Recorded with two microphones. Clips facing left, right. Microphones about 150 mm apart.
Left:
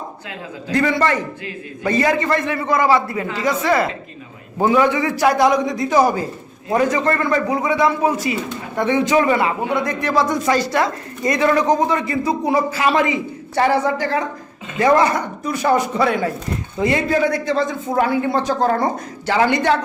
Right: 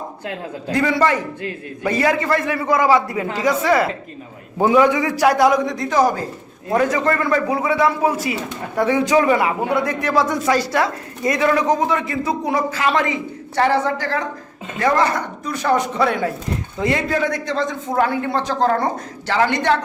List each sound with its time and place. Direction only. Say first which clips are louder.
0.7 s a man's voice: even; 5° right (ahead or behind)
5.7 s a man's voice: left 1 dB; 5° left (ahead or behind)
6.7 s a man's voice: even; centre (ahead or behind)